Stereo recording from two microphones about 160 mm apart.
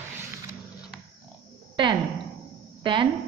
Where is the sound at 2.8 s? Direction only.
30° right (ahead or behind).